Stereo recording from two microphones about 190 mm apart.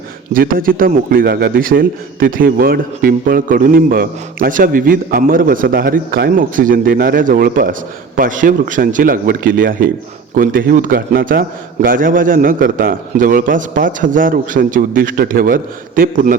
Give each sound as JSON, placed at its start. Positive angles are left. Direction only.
{"t": 0.3, "sound": "a man's voice", "side_deg": -50}